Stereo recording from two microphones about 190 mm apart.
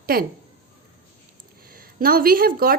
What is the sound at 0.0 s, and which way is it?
Speech, 50° right (ahead or behind).